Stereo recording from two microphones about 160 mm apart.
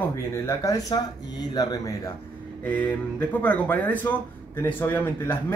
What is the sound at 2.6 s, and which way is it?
Speech, 10° left (ahead or behind).